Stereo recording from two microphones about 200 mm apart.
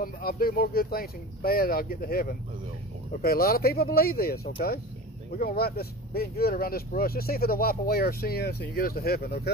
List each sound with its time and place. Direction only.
0.0 s speech: 50° left (ahead or behind)
5.4 s speech: 45° left (ahead or behind)